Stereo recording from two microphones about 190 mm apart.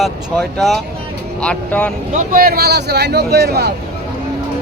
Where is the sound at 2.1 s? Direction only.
50° right (ahead or behind).